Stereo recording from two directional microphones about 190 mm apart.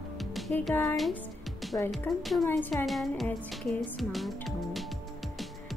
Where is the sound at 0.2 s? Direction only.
Centre (ahead or behind).